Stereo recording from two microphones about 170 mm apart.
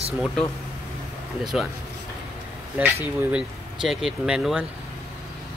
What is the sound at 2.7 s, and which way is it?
Speech, 10° right (ahead or behind).